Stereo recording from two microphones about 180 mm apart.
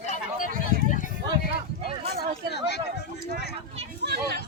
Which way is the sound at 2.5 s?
65° left (ahead or behind).